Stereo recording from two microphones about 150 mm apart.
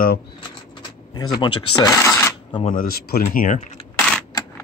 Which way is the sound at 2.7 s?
85° left.